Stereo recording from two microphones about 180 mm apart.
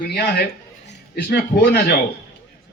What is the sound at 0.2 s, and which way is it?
A man's voice, 60° left (ahead or behind).